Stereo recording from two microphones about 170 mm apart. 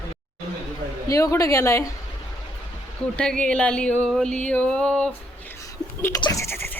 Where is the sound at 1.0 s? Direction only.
20° left (ahead or behind).